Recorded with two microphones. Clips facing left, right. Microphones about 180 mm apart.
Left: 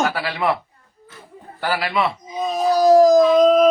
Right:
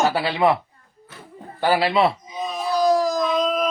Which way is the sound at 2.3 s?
40° left (ahead or behind).